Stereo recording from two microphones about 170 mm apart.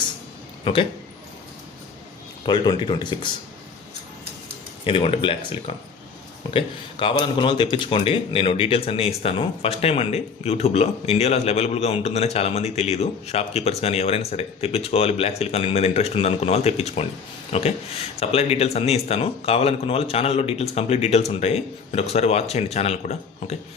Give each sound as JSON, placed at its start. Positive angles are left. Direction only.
{"t": 0.6, "sound": "speech", "side_deg": 30}
{"t": 2.5, "sound": "speech", "side_deg": 25}
{"t": 4.9, "sound": "speech", "side_deg": 30}